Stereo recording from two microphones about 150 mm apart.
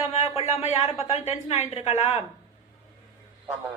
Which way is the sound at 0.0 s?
40° left (ahead or behind).